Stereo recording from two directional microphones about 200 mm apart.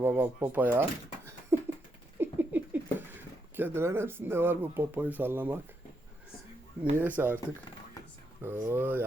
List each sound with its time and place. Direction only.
0.0 s speech: 10° right (ahead or behind)
1.5 s a sound: 15° right (ahead or behind)
6.8 s speech: 10° right (ahead or behind)
8.4 s speech: 10° right (ahead or behind)